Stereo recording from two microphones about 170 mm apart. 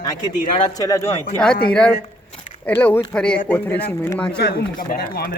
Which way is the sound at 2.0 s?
35° left (ahead or behind).